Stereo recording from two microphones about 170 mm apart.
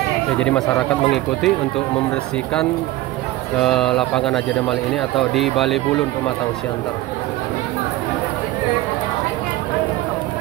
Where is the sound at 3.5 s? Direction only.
5° left (ahead or behind).